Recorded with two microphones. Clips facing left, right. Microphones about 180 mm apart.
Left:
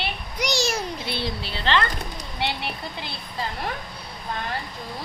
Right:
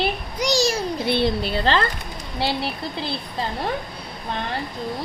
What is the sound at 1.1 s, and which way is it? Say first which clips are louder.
A woman's voice: right 9 dB; 55° right (ahead or behind).